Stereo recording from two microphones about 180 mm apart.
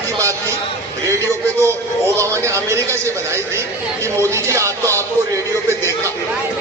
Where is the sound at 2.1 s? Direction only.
15° right (ahead or behind).